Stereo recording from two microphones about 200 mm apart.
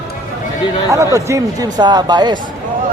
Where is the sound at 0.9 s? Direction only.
15° right (ahead or behind).